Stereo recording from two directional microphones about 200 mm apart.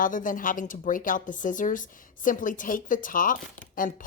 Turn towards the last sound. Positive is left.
turn(degrees=40)  # may be behind; listen again after turning